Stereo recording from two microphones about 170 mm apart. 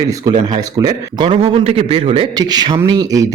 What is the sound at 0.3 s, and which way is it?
A man's voice, 25° right (ahead or behind).